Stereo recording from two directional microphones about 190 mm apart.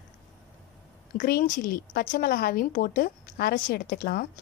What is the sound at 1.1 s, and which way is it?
A woman's voice, 45° left (ahead or behind).